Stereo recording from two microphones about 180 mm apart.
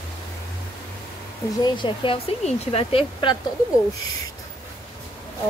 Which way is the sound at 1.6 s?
25° left (ahead or behind).